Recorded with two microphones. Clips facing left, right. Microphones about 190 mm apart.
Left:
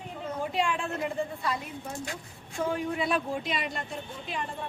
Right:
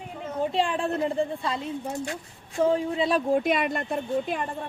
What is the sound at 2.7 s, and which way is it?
Speech, 30° right (ahead or behind).